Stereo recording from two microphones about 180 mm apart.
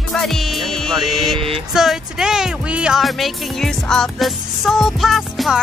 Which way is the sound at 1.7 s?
Centre (ahead or behind).